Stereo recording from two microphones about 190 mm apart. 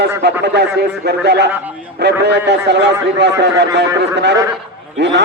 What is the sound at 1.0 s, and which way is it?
A man's voice, 60° right (ahead or behind).